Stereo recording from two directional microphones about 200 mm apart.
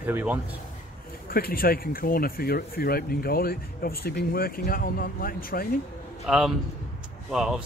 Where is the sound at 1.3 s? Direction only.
45° left (ahead or behind).